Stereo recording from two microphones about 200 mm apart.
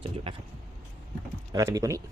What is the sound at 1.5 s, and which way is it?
Speech, 15° right (ahead or behind).